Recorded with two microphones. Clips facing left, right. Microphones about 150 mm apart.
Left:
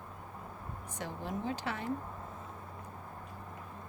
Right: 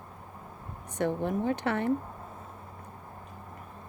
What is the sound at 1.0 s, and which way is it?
Speech, 60° right (ahead or behind).